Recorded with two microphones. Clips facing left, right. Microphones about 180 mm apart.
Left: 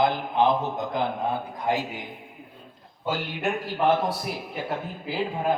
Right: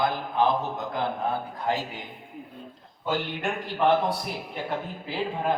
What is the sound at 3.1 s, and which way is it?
A man's voice, 5° left (ahead or behind).